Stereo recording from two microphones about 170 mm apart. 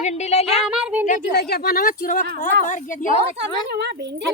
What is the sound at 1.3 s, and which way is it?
A woman's voice, 70° left (ahead or behind).